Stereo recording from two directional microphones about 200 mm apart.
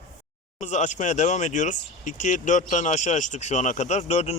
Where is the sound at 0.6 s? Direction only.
35° left (ahead or behind).